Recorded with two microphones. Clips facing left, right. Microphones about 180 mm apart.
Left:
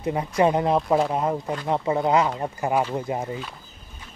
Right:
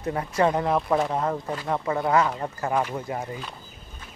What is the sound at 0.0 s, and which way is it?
Speech, 15° left (ahead or behind).